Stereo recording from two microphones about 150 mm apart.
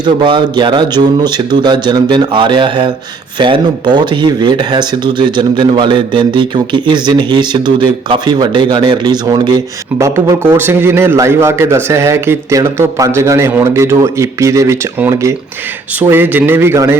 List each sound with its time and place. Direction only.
0.0 s a man's voice: 30° right (ahead or behind)